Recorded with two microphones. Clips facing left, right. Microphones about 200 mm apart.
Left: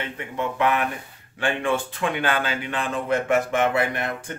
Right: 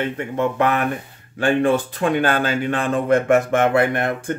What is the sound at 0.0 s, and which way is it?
Speech, 50° right (ahead or behind).